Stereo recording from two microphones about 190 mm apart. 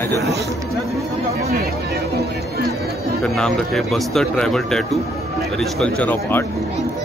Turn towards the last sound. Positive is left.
turn(degrees=10)  # may be behind; listen again after turning